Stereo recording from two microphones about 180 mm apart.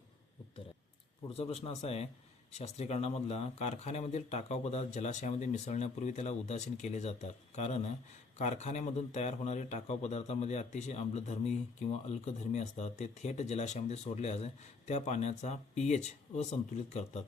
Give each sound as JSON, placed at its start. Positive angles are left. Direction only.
{"t": 1.3, "sound": "a man's voice", "side_deg": 35}